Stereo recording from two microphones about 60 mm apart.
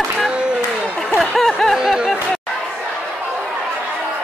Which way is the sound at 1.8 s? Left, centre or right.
Centre.